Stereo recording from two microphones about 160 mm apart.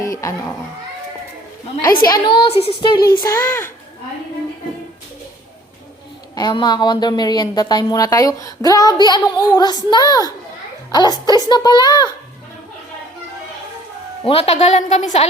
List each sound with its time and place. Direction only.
0.0 s speech: 20° left (ahead or behind)
2.0 s speech: 30° left (ahead or behind)
3.2 s speech: 20° left (ahead or behind)
6.3 s speech: 25° left (ahead or behind)
14.3 s a woman's voice: 40° left (ahead or behind)